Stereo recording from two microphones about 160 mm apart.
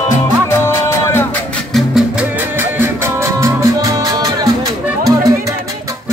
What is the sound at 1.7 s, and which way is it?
Music, centre (ahead or behind).